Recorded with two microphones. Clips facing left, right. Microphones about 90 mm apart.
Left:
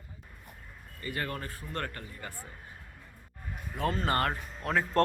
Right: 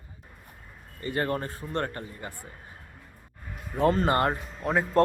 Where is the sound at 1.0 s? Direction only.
35° right (ahead or behind).